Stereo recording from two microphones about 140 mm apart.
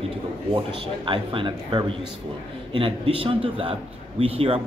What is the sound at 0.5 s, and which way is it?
Speech, 35° right (ahead or behind).